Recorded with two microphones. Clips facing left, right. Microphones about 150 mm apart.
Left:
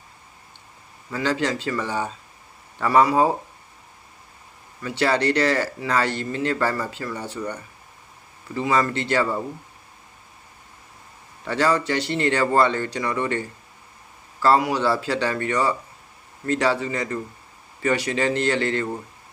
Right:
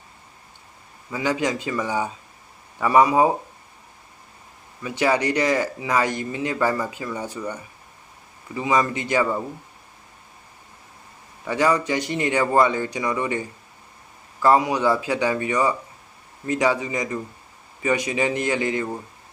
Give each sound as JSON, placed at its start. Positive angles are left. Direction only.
{"t": 1.1, "sound": "speech", "side_deg": -10}
{"t": 4.8, "sound": "speech", "side_deg": -15}
{"t": 11.4, "sound": "speech", "side_deg": -15}
{"t": 14.4, "sound": "speech", "side_deg": -15}